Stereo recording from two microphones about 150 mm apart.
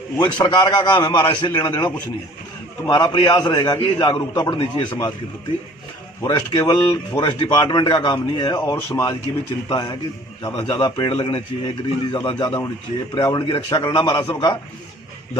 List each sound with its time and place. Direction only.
0.2 s a man's voice: 30° left (ahead or behind)
6.2 s a man's voice: 20° left (ahead or behind)
7.2 s a man's voice: 35° left (ahead or behind)